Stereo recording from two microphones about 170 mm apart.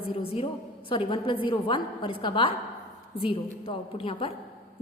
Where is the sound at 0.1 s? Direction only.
35° left (ahead or behind).